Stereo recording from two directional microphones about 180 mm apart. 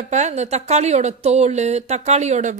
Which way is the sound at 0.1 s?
40° right (ahead or behind).